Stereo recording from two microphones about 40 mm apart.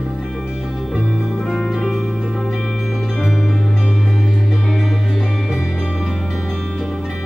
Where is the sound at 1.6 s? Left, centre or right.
Centre.